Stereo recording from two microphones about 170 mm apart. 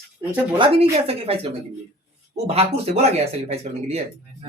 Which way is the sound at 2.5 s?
35° right (ahead or behind).